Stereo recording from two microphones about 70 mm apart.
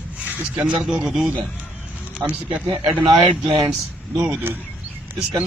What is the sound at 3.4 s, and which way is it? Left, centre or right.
Speech, right.